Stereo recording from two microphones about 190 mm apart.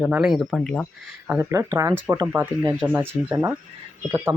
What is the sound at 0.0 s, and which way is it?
Speech, 5° right (ahead or behind).